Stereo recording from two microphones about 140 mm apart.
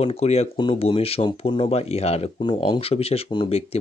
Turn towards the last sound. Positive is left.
turn(degrees=45)  # may be behind; listen again after turning